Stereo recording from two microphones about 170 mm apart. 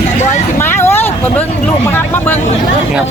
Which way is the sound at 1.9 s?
10° left (ahead or behind).